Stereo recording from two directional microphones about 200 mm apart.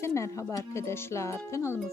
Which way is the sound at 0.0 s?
15° left (ahead or behind).